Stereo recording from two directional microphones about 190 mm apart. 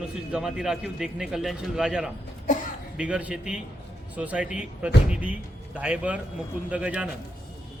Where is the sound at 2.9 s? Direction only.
5° right (ahead or behind).